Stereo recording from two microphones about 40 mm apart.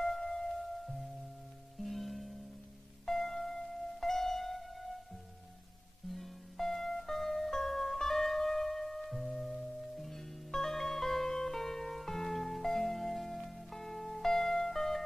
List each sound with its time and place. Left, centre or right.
0.0 s music: centre
6.1 s music: centre